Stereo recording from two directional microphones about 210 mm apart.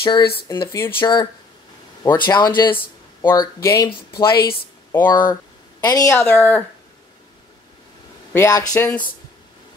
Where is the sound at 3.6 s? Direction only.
15° left (ahead or behind).